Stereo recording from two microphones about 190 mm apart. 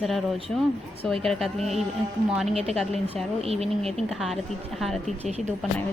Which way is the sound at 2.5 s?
35° right (ahead or behind).